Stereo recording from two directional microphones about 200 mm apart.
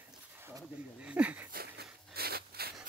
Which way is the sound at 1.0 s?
5° right (ahead or behind).